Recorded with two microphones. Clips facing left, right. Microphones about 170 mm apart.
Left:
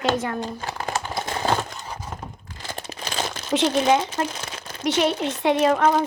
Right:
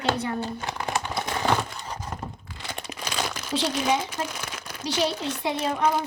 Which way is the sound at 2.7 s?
30° left (ahead or behind).